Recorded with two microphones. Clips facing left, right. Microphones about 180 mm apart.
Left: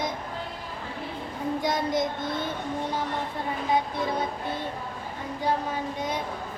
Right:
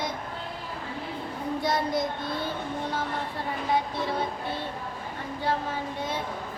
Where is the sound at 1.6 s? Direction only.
20° left (ahead or behind).